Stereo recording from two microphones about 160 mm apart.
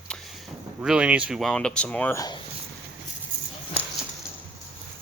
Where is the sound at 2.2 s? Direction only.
25° left (ahead or behind).